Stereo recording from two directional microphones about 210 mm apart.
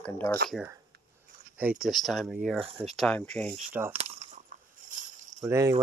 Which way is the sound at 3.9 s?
30° right (ahead or behind).